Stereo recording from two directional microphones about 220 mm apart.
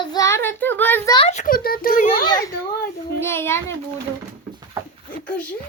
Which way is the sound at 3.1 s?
10° left (ahead or behind).